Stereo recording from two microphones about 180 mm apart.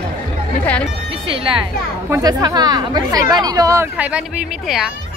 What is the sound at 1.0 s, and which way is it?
Music, 30° right (ahead or behind).